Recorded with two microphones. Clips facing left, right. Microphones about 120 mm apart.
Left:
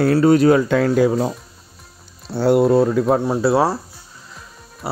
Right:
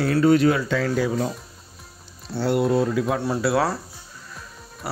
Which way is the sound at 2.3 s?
45° left (ahead or behind).